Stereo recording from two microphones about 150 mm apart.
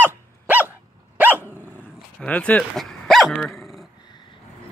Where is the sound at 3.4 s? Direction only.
Centre (ahead or behind).